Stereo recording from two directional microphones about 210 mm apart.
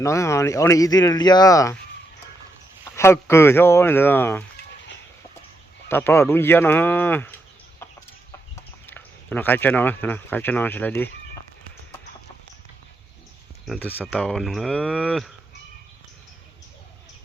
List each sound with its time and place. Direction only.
0.0 s speech: 15° left (ahead or behind)
2.9 s speech: 10° left (ahead or behind)
5.9 s speech: 10° left (ahead or behind)
8.9 s speech: 10° left (ahead or behind)
13.8 s speech: 10° left (ahead or behind)